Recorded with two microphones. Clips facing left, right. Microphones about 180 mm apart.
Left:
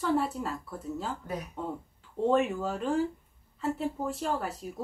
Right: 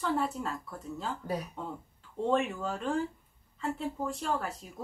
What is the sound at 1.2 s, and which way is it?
Speech, 35° right (ahead or behind).